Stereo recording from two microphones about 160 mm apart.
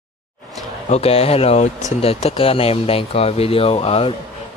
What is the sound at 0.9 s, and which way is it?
Speech, 40° left (ahead or behind).